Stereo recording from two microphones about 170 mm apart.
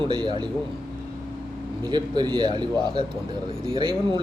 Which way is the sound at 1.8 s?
25° right (ahead or behind).